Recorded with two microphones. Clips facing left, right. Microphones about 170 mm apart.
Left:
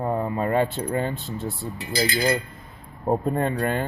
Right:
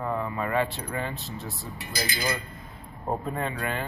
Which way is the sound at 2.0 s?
25° left (ahead or behind).